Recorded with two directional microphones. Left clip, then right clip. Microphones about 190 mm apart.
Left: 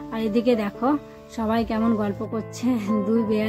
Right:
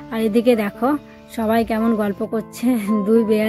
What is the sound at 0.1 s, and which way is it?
Speech, 15° right (ahead or behind).